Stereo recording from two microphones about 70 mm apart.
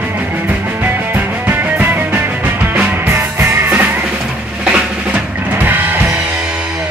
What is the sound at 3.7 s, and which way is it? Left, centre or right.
Music, right.